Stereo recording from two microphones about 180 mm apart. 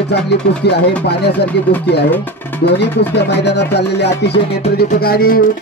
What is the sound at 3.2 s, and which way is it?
Speech, 65° left (ahead or behind).